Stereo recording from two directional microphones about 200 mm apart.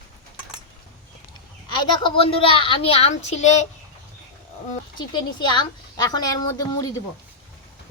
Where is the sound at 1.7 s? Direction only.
25° left (ahead or behind).